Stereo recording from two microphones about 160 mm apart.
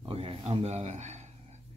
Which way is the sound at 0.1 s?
35° right (ahead or behind).